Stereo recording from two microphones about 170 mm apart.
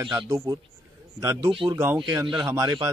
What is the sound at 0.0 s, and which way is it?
Speech, 25° right (ahead or behind).